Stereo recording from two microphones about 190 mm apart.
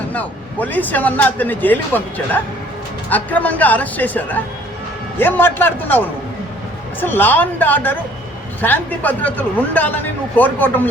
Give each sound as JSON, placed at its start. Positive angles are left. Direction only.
{"t": 0.1, "sound": "speech", "side_deg": 10}